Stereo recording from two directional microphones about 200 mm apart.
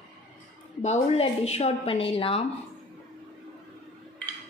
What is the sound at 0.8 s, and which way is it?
A woman's voice, 30° left (ahead or behind).